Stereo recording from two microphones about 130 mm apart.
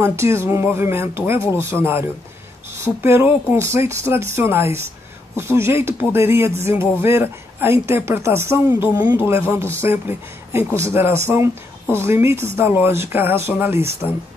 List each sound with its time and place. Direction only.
0.0 s a woman's voice: 20° right (ahead or behind)